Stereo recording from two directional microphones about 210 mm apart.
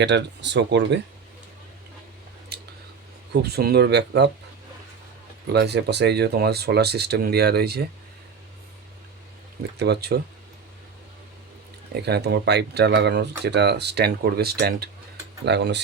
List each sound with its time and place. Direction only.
0.0 s speech: 55° right (ahead or behind)
2.5 s a sound: 50° right (ahead or behind)
3.4 s speech: 50° right (ahead or behind)
5.5 s speech: 50° right (ahead or behind)
9.7 s speech: 50° right (ahead or behind)
11.9 s speech: 50° right (ahead or behind)